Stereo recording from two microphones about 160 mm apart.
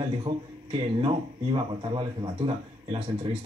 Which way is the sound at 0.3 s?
25° right (ahead or behind).